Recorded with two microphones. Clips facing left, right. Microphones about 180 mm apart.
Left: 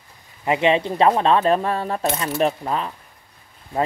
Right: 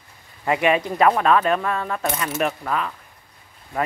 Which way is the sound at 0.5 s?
25° left (ahead or behind).